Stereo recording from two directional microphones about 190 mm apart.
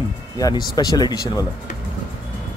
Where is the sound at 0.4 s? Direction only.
20° left (ahead or behind).